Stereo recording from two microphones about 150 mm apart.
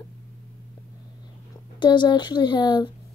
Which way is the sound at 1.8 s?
30° left (ahead or behind).